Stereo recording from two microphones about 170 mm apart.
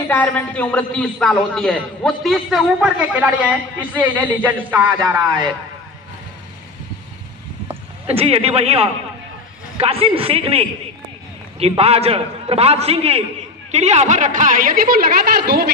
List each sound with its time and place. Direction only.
0.1 s a man's voice: 10° left (ahead or behind); by 4.9 s 10° right (ahead or behind)
8.0 s a man's voice: 35° right (ahead or behind)
11.8 s a man's voice: 35° right (ahead or behind); by 15.6 s 65° right (ahead or behind)